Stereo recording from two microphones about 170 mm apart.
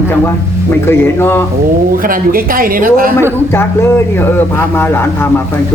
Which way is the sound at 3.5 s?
15° left (ahead or behind).